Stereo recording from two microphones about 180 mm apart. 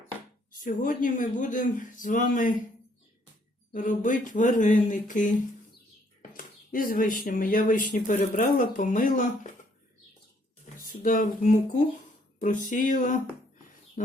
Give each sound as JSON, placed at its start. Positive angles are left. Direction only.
{"t": 0.6, "sound": "speech", "side_deg": 50}
{"t": 3.7, "sound": "speech", "side_deg": 45}
{"t": 10.8, "sound": "speech", "side_deg": 50}